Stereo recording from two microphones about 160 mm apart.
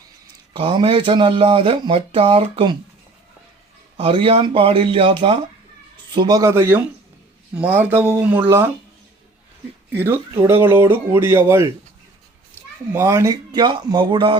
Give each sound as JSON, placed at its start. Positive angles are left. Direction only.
{"t": 0.5, "sound": "speech", "side_deg": -30}
{"t": 3.9, "sound": "a man's voice", "side_deg": -35}
{"t": 9.9, "sound": "speech", "side_deg": -10}
{"t": 12.9, "sound": "a man's voice", "side_deg": -15}